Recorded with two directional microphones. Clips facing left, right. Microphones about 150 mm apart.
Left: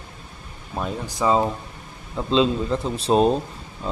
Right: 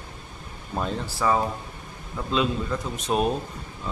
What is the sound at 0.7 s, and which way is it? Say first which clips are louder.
Speech: left 1 dB; 5° left (ahead or behind).